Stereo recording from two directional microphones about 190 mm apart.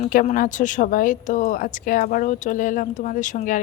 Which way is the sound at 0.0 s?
40° left (ahead or behind).